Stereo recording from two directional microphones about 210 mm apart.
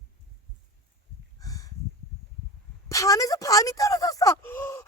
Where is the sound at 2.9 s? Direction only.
15° left (ahead or behind).